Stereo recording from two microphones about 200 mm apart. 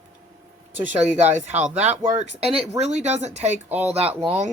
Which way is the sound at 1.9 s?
35° right (ahead or behind).